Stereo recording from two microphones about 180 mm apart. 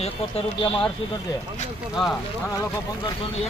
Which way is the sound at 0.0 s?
30° left (ahead or behind).